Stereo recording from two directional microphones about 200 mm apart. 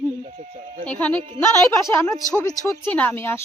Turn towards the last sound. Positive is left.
turn(degrees=10)  # may be behind; listen again after turning